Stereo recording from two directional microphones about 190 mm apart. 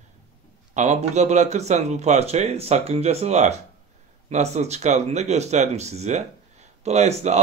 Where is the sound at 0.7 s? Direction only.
40° right (ahead or behind).